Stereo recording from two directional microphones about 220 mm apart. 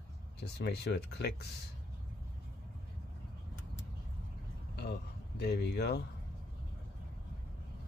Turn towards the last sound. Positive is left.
turn(degrees=50)  # may be behind; listen again after turning